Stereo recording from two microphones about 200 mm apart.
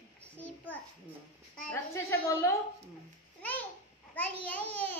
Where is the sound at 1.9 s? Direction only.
10° left (ahead or behind).